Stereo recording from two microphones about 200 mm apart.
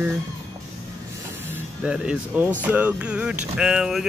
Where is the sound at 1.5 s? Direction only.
5° right (ahead or behind).